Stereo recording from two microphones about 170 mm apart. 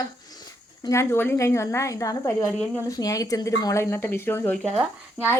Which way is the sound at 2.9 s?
20° left (ahead or behind).